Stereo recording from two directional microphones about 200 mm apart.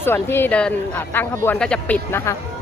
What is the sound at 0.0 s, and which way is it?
Speech, 10° left (ahead or behind).